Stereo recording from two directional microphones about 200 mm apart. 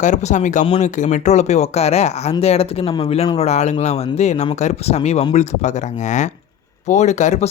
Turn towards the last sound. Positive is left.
turn(degrees=35)  # may be behind; listen again after turning